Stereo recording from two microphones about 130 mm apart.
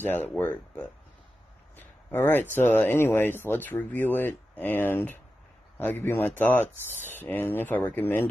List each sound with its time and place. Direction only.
0.0 s speech: 15° left (ahead or behind)